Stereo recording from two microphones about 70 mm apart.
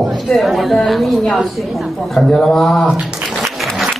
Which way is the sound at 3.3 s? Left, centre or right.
Centre.